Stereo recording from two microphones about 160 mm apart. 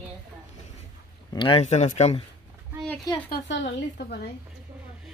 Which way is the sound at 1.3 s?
30° left (ahead or behind).